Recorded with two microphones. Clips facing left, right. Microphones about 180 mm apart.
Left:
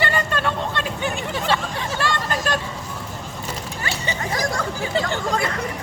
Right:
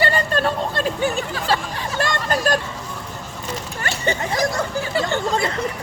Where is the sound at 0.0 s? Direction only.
40° right (ahead or behind).